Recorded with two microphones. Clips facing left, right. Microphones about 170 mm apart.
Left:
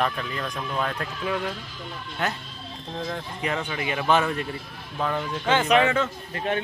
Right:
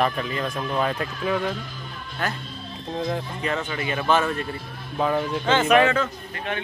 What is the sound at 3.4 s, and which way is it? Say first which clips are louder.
Speech: right 1 dB; 10° left (ahead or behind).